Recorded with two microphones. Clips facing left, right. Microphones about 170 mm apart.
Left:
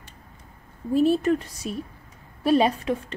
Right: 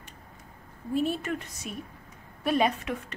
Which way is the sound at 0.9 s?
35° left (ahead or behind).